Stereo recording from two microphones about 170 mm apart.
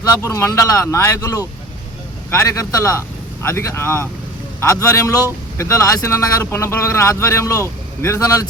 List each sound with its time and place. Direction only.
0.0 s speech: 15° left (ahead or behind)